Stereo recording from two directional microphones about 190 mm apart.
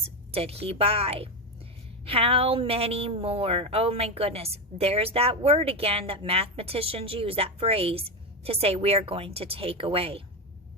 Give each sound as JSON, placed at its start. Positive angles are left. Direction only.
{"t": 0.0, "sound": "a woman's voice", "side_deg": -30}